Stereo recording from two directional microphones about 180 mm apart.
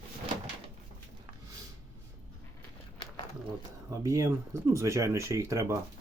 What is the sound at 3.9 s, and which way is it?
Speech, 15° right (ahead or behind).